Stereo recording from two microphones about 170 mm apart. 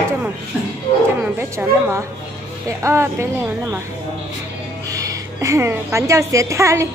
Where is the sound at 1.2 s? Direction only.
15° right (ahead or behind).